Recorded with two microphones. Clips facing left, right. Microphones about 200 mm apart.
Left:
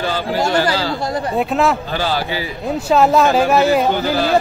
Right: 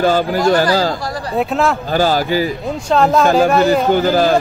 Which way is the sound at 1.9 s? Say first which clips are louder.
Right 6 dB; 45° right (ahead or behind).